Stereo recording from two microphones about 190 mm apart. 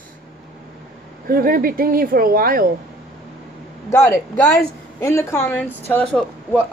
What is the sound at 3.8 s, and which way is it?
Speech, 15° left (ahead or behind).